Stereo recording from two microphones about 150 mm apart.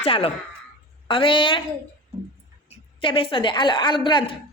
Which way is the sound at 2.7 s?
35° left (ahead or behind).